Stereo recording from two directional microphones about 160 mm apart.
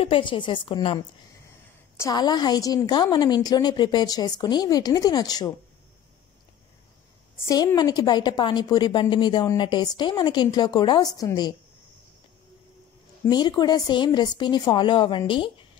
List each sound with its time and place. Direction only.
0.0 s a woman's voice: 35° left (ahead or behind)
7.3 s a woman's voice: 20° left (ahead or behind)
13.3 s a woman's voice: 25° left (ahead or behind)